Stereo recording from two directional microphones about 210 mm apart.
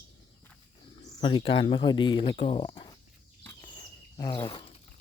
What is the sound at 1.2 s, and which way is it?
Speech, 25° left (ahead or behind).